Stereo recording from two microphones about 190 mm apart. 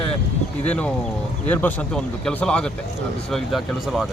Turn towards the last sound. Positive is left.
turn(degrees=0)  # may be behind; listen again after turning